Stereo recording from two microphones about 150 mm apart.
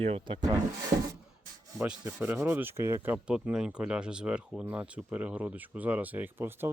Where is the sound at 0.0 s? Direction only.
40° right (ahead or behind).